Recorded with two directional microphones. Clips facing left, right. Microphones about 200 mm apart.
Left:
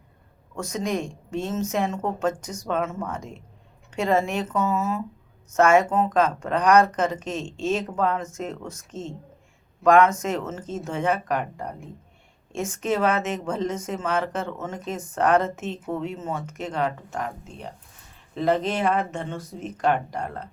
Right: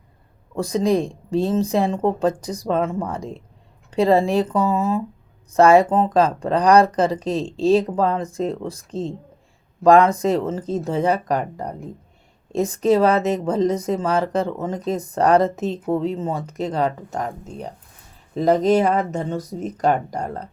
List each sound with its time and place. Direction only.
0.5 s speech: 35° right (ahead or behind)